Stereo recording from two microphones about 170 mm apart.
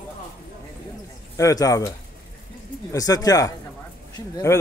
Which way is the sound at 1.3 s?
20° left (ahead or behind).